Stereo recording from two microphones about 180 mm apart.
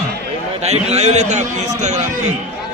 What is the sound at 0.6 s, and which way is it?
A man's voice, 40° right (ahead or behind).